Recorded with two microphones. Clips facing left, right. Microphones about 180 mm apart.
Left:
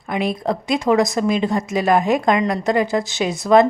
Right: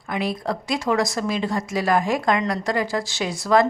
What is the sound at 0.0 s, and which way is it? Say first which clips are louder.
Speech: left 4 dB; 20° left (ahead or behind).